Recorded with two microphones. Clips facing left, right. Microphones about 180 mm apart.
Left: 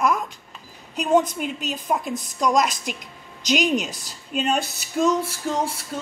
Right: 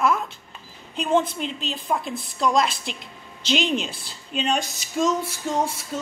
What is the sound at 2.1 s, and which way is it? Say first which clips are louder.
Speech: left 3 dB; 40° left (ahead or behind).